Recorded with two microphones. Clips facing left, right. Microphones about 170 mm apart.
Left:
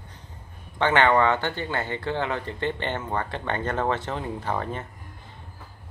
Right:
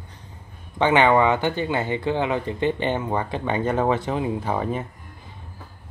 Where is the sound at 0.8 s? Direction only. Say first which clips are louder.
Right 3 dB; 15° right (ahead or behind).